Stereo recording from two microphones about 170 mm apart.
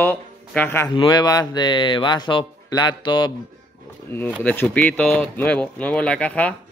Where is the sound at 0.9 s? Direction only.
25° left (ahead or behind).